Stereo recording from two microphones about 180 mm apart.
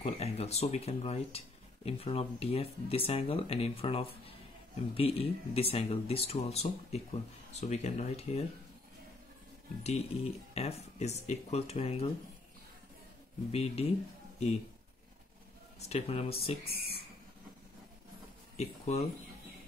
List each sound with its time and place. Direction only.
0.0 s speech: 35° left (ahead or behind)
9.8 s speech: 35° left (ahead or behind)
13.5 s speech: 35° left (ahead or behind)
15.9 s speech: 35° left (ahead or behind)
18.6 s speech: 35° left (ahead or behind)